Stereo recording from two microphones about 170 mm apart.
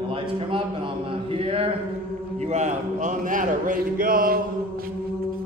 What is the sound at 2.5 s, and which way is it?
A man's voice, 45° right (ahead or behind).